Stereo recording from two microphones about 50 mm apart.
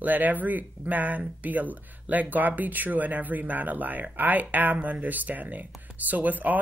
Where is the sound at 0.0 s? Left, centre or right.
Right.